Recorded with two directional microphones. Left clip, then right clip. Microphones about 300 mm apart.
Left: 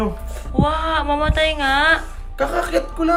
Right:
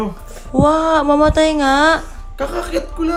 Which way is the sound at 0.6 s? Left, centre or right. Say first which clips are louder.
Right 6 dB; centre.